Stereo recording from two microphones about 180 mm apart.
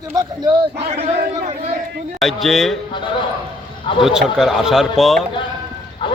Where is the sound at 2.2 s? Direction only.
Centre (ahead or behind).